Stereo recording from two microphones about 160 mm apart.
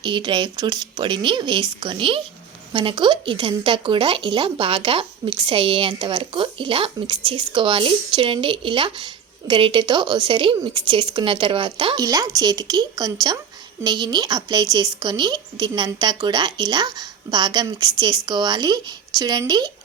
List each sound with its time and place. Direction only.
0.0 s a woman's voice: 30° right (ahead or behind)